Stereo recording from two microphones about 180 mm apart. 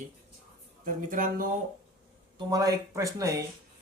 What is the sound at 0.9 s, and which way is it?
Speech, 50° right (ahead or behind).